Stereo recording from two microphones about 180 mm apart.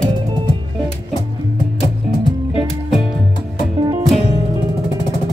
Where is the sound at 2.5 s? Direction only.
Centre (ahead or behind).